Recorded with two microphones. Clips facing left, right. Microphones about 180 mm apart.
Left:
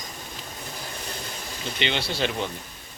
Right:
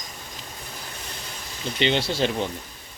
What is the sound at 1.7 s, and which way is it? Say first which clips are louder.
Speech: right 5 dB; 35° right (ahead or behind).